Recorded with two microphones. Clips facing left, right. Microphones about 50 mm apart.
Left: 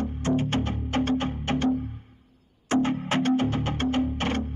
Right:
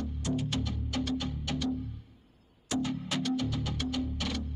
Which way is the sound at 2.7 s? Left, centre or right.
Left.